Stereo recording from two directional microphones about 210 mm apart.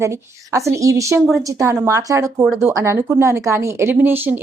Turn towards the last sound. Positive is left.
turn(degrees=-10)  # may be behind; listen again after turning